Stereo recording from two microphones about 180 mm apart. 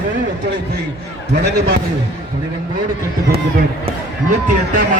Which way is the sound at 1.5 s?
65° right (ahead or behind).